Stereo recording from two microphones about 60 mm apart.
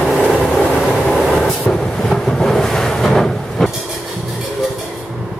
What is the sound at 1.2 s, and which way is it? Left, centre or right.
Train, centre.